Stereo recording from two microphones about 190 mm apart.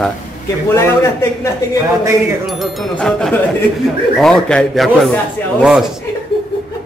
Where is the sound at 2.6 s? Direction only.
5° left (ahead or behind).